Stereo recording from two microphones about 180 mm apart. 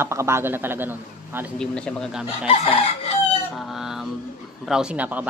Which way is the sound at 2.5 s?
30° left (ahead or behind).